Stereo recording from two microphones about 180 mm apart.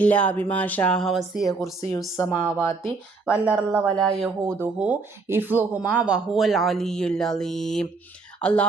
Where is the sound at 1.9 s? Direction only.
15° left (ahead or behind).